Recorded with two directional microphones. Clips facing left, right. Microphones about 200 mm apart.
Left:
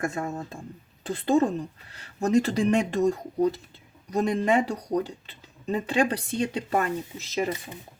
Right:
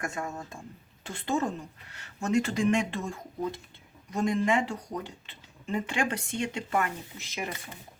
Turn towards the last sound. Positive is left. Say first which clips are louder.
# left 9 dB
turn(degrees=35)  # may be behind; listen again after turning